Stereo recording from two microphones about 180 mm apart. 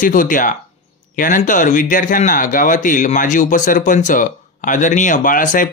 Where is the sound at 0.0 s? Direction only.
50° left (ahead or behind).